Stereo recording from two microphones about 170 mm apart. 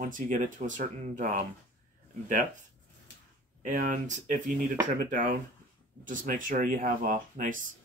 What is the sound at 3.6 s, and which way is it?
Speech, 50° right (ahead or behind).